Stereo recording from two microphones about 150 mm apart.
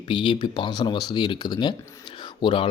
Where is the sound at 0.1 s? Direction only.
30° left (ahead or behind).